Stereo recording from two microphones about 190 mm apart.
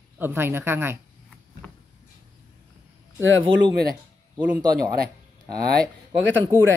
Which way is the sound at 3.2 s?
90° right.